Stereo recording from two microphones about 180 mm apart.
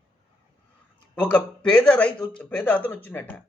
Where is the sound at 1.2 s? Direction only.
10° left (ahead or behind).